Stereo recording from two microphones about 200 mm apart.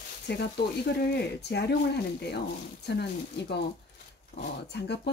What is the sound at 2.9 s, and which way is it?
Speech, 55° left (ahead or behind).